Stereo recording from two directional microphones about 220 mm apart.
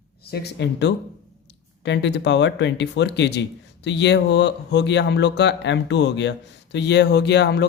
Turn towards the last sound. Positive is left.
turn(degrees=50)  # may be behind; listen again after turning